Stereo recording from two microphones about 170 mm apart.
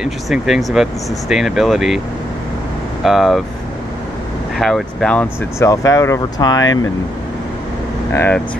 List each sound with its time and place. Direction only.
0.0 s speech: centre (ahead or behind)
3.0 s speech: centre (ahead or behind)
4.6 s speech: centre (ahead or behind)
5.6 s speech: 20° left (ahead or behind)
8.1 s speech: 10° left (ahead or behind)